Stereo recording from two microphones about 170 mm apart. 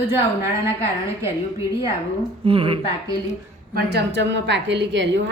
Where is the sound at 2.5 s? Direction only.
35° right (ahead or behind).